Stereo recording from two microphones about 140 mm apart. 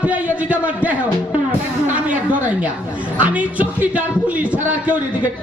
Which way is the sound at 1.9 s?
10° right (ahead or behind).